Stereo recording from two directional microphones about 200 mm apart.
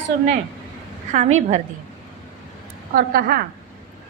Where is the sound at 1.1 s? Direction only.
35° right (ahead or behind).